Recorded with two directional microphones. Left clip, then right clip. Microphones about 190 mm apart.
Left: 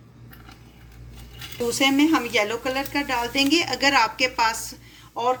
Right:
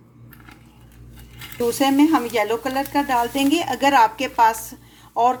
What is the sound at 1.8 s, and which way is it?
A woman's voice, 35° right (ahead or behind).